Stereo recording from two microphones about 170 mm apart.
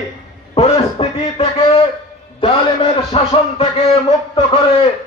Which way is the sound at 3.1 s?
35° left (ahead or behind).